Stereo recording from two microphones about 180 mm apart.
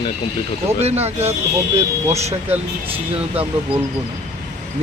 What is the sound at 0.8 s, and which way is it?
Speech, 35° right (ahead or behind).